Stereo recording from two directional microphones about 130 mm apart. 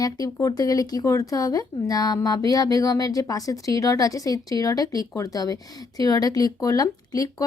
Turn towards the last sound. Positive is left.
turn(degrees=30)  # may be behind; listen again after turning